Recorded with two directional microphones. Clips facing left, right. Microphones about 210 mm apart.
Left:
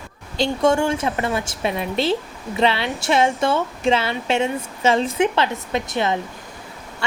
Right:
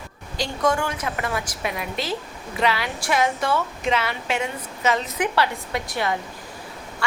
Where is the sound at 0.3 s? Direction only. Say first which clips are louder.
Left 5 dB; 25° left (ahead or behind).